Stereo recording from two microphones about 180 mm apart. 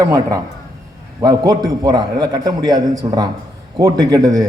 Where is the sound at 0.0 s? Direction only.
20° right (ahead or behind).